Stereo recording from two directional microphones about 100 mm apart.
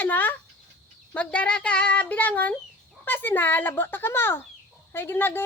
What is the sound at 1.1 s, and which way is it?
A woman's voice, 10° left (ahead or behind).